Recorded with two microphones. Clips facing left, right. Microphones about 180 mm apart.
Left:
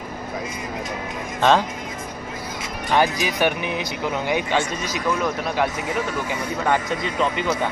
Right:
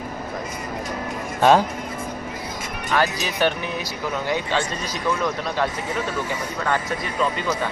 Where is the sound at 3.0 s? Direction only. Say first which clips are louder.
Left 1 dB; 15° left (ahead or behind).